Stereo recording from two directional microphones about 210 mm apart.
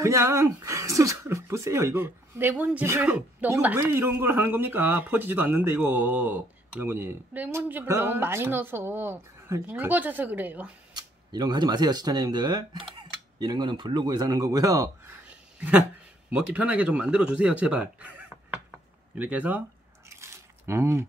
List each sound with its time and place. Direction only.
0.0 s speech: 15° right (ahead or behind)
11.0 s speech: 20° right (ahead or behind)
20.1 s a sound: 15° right (ahead or behind)